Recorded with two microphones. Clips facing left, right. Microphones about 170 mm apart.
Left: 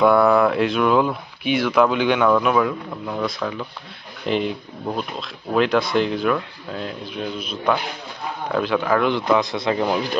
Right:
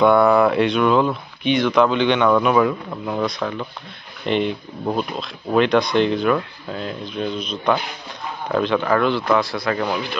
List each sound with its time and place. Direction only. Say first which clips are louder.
0.0 s speech: right 1 dB; centre (ahead or behind)
9.0 s speech: even; 15° left (ahead or behind)